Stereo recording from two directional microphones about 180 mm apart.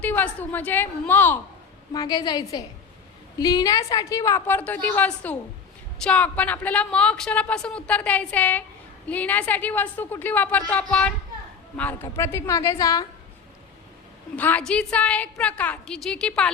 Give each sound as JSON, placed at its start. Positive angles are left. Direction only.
{"t": 0.0, "sound": "a woman's voice", "side_deg": 10}
{"t": 1.9, "sound": "a woman's voice", "side_deg": 20}
{"t": 14.3, "sound": "a woman's voice", "side_deg": 10}